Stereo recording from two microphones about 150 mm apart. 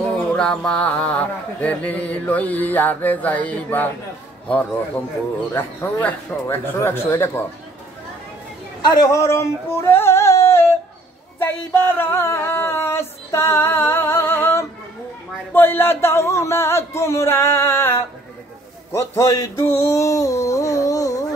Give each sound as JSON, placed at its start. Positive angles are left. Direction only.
{"t": 0.3, "sound": "music", "side_deg": 5}
{"t": 5.5, "sound": "music", "side_deg": 15}
{"t": 8.8, "sound": "a sound", "side_deg": 25}
{"t": 15.5, "sound": "music", "side_deg": 15}